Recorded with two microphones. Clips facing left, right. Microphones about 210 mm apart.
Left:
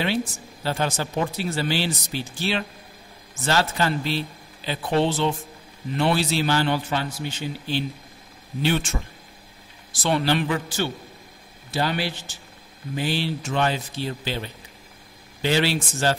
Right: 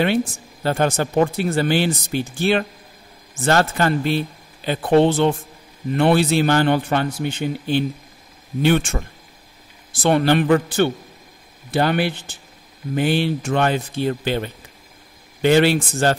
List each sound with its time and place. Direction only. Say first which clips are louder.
0.7 s a man's voice: right 6 dB; 55° right (ahead or behind)
10.0 s a man's voice: right 6 dB; 55° right (ahead or behind)